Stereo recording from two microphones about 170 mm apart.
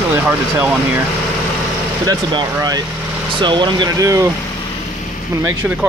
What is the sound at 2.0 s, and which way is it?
Speech, 20° right (ahead or behind).